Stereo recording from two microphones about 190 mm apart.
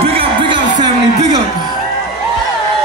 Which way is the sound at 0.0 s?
30° right (ahead or behind).